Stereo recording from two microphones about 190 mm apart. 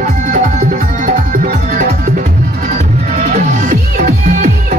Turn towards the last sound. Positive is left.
turn(degrees=-40)  # may be behind; listen again after turning